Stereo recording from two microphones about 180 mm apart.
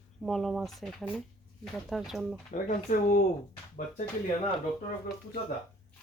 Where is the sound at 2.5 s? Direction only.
50° left (ahead or behind).